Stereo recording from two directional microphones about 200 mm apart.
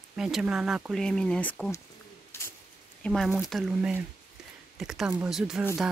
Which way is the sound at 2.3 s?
15° left (ahead or behind).